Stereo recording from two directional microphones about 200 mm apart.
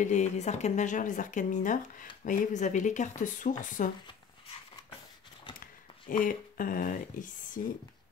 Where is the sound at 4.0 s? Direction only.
25° left (ahead or behind).